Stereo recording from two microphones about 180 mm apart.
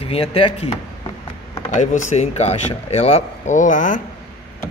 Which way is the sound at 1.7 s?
40° left (ahead or behind).